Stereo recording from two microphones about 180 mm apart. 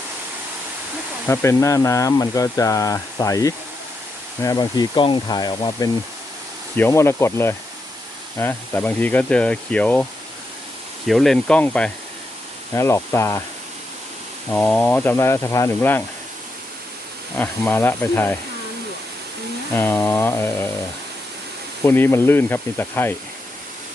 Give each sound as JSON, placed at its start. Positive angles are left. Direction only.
{"t": 1.3, "sound": "speech", "side_deg": 15}
{"t": 14.5, "sound": "speech", "side_deg": 10}
{"t": 17.3, "sound": "speech", "side_deg": 10}
{"t": 19.7, "sound": "speech", "side_deg": 10}
{"t": 21.8, "sound": "speech", "side_deg": 10}